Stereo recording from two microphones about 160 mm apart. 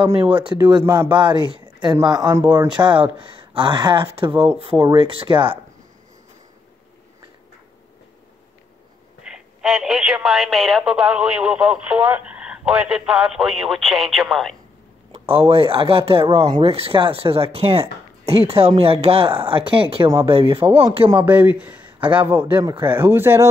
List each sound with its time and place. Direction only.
0.0 s speech: 35° right (ahead or behind)
2.4 s a man's voice: 15° right (ahead or behind)
2.7 s speech: 30° right (ahead or behind)
9.2 s speech: centre (ahead or behind)
15.1 s speech: 35° right (ahead or behind)
21.2 s a man's voice: 10° right (ahead or behind)